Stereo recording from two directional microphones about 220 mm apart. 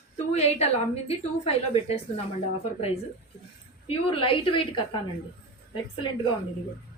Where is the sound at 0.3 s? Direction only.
30° left (ahead or behind).